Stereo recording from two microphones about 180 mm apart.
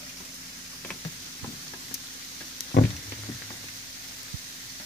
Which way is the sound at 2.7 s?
60° left (ahead or behind).